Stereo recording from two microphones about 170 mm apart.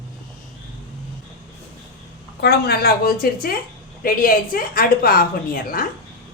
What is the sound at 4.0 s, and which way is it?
A woman's voice, 55° left (ahead or behind).